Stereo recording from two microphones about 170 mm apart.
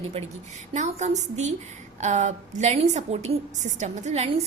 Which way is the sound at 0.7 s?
45° right (ahead or behind).